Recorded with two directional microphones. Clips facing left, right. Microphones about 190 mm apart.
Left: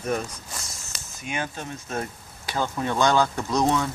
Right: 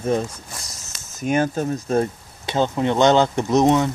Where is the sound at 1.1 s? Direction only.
45° right (ahead or behind); by 3.8 s 20° right (ahead or behind).